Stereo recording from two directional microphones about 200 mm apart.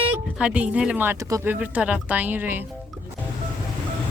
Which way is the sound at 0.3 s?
5° right (ahead or behind).